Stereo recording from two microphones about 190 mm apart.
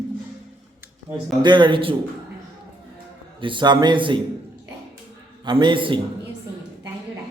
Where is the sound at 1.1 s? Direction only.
25° right (ahead or behind).